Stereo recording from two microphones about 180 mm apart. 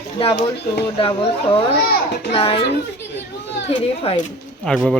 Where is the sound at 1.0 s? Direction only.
30° left (ahead or behind).